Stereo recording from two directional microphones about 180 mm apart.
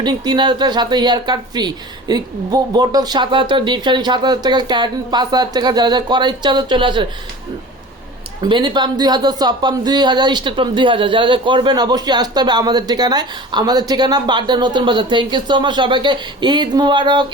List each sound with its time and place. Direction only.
0.0 s speech: 25° right (ahead or behind)
8.4 s speech: 25° right (ahead or behind)